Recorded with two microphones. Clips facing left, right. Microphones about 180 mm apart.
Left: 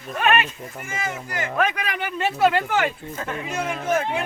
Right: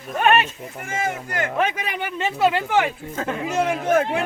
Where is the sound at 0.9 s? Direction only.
50° right (ahead or behind).